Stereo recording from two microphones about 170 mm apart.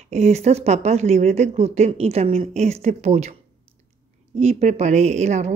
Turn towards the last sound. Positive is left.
turn(degrees=-40)  # may be behind; listen again after turning